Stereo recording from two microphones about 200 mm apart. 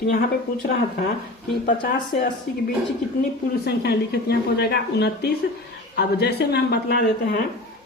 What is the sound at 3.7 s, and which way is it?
Speech, 55° left (ahead or behind).